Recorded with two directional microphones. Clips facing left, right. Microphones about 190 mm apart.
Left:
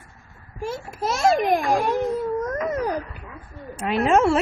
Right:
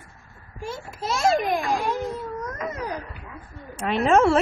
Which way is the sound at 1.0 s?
45° left (ahead or behind).